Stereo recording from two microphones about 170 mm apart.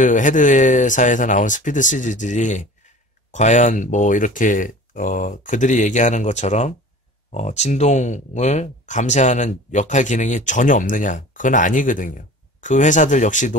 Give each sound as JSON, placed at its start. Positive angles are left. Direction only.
{"t": 0.0, "sound": "speech", "side_deg": 50}